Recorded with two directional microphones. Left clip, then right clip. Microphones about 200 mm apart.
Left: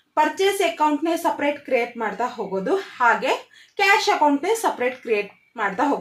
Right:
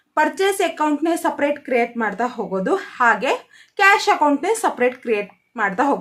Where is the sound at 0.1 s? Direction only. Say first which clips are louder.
Right 1 dB; 25° right (ahead or behind).